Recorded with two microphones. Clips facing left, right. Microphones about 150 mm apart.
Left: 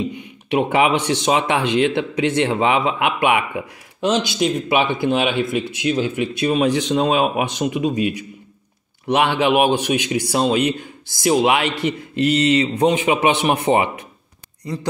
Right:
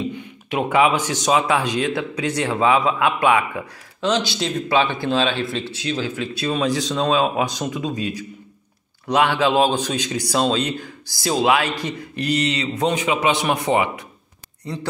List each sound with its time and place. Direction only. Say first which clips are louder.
0.0 s a sound: left 1 dB; 25° left (ahead or behind)
1.2 s speech: right 2 dB; 25° left (ahead or behind)
2.1 s speech: left 5 dB; 40° right (ahead or behind)
2.4 s speech: right 3 dB; 25° left (ahead or behind)